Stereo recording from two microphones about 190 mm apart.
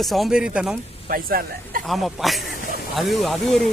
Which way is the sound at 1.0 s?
50° right (ahead or behind).